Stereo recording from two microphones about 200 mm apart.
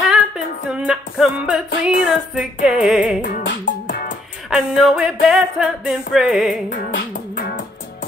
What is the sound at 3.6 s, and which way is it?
Music, 45° left (ahead or behind).